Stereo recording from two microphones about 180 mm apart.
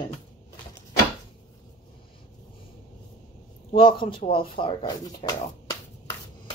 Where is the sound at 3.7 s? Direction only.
30° left (ahead or behind).